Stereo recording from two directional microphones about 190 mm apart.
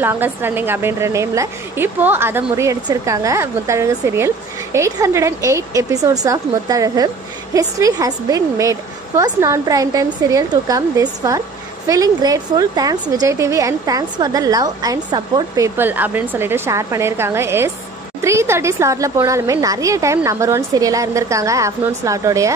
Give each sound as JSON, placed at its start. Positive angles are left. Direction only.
{"t": 0.0, "sound": "a woman's voice", "side_deg": -10}